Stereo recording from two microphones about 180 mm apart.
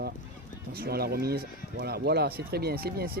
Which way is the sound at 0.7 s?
60° right (ahead or behind).